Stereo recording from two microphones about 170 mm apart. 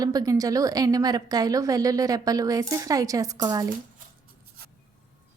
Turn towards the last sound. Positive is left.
turn(degrees=-20)  # may be behind; listen again after turning